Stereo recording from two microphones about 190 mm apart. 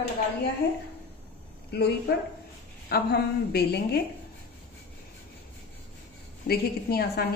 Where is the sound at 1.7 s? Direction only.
60° left (ahead or behind).